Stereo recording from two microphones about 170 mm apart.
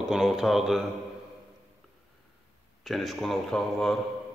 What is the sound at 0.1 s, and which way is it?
Speech, centre (ahead or behind).